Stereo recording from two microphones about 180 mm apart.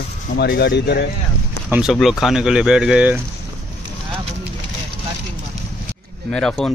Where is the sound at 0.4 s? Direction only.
75° left (ahead or behind).